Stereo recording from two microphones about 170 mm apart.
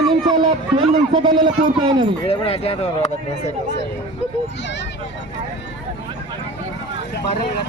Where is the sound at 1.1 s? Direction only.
30° right (ahead or behind).